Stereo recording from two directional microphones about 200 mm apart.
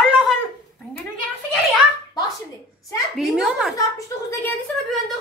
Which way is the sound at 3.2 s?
Centre (ahead or behind).